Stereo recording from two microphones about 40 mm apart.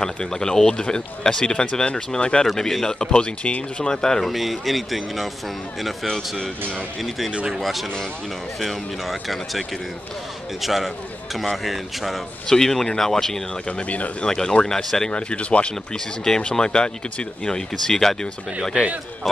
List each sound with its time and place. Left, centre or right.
0.0 s speech: centre
4.3 s speech: centre
6.0 s speech: centre
8.5 s speech: centre
12.4 s speech: centre
13.7 s a man's voice: left
14.2 s speech: centre
15.0 s speech: left
16.3 s speech: centre